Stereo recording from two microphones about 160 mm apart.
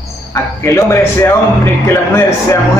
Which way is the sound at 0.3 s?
15° left (ahead or behind).